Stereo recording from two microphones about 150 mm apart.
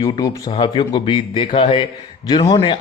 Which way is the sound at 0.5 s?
35° left (ahead or behind).